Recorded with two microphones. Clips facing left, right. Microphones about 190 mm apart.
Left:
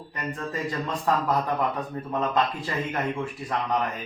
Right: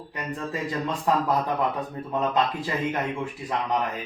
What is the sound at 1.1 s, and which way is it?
Speech, 15° right (ahead or behind).